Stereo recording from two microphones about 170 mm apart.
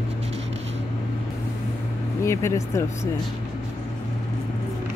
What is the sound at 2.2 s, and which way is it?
Speech, 15° left (ahead or behind).